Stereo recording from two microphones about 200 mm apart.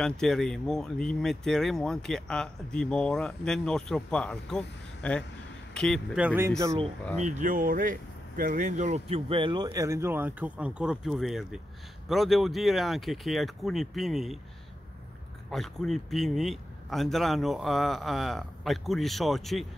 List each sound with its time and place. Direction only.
0.0 s speech: centre (ahead or behind)
7.2 s speech: 35° right (ahead or behind); by 14.4 s centre (ahead or behind)
15.5 s speech: centre (ahead or behind)